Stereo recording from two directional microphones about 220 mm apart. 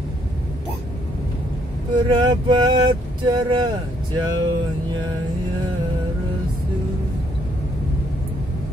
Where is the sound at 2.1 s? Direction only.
20° right (ahead or behind).